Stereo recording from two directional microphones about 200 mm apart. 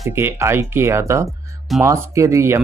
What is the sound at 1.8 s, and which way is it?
Speech, 15° right (ahead or behind).